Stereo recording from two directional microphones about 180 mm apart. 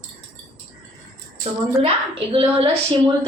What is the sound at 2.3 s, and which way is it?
Speech, 30° right (ahead or behind).